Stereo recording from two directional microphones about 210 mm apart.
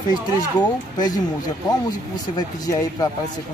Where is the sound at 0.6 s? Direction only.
20° left (ahead or behind).